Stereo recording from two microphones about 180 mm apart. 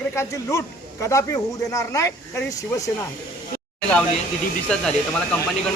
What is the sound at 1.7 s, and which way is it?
Speech, 15° left (ahead or behind).